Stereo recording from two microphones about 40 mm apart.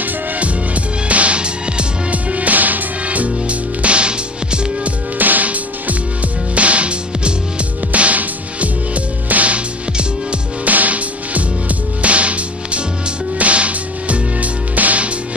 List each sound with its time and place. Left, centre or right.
1.0 s music: right
2.0 s music: right
5.2 s music: right